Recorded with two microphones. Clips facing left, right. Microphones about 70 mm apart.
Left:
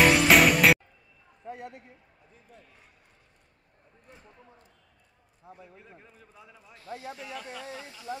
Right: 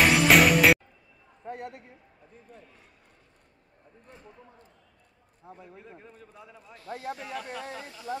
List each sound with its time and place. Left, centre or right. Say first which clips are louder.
0.0 s music: even; centre
1.5 s a man's voice: right 2 dB; right
5.4 s a man's voice: right 2 dB; right
5.8 s a man's voice: right 4 dB; centre
6.9 s speech: right 3 dB; right